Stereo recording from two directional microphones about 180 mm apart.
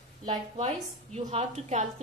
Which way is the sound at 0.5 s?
40° right (ahead or behind).